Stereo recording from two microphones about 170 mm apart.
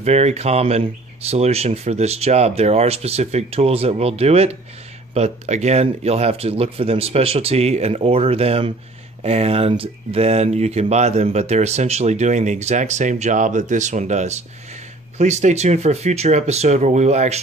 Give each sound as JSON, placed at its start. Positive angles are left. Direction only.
{"t": 0.0, "sound": "speech", "side_deg": -40}